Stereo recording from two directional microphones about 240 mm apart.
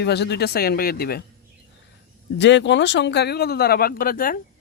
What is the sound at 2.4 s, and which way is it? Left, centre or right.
Speech, left.